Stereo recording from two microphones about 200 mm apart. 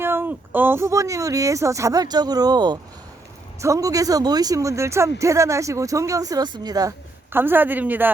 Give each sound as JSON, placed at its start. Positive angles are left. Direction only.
{"t": 0.0, "sound": "speech", "side_deg": -10}